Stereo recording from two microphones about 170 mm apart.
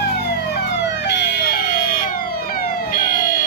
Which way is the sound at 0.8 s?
85° left.